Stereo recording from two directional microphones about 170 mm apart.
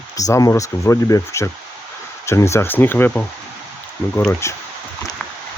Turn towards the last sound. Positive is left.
turn(degrees=15)  # may be behind; listen again after turning